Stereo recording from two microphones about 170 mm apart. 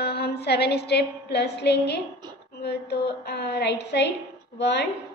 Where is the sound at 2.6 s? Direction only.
75° left (ahead or behind).